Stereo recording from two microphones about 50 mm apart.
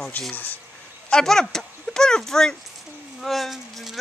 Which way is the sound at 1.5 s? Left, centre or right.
Centre.